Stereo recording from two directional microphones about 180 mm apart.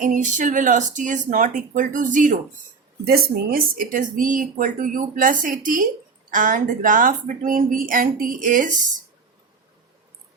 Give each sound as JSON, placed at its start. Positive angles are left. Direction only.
{"t": 0.0, "sound": "speech", "side_deg": -45}